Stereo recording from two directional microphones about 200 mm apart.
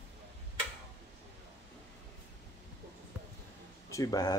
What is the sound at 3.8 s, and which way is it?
Speech, 15° left (ahead or behind).